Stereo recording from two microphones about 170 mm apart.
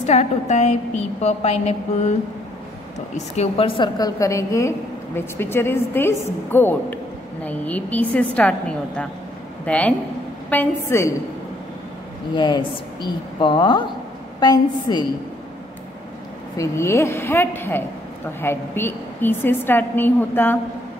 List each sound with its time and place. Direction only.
0.0 s a woman's voice: 40° left (ahead or behind)
3.2 s a woman's voice: 35° left (ahead or behind); by 11.1 s 15° left (ahead or behind)
12.4 s speech: 25° left (ahead or behind)
16.5 s a woman's voice: 15° left (ahead or behind)